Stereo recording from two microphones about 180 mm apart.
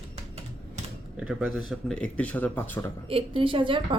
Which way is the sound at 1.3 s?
5° right (ahead or behind).